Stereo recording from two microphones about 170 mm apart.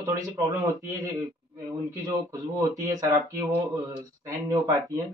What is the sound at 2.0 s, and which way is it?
Speech, 20° right (ahead or behind).